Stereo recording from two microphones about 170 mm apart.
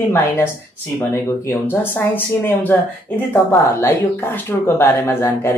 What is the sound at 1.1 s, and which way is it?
Speech, 15° left (ahead or behind).